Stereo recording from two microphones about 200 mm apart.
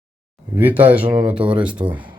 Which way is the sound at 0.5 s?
10° right (ahead or behind).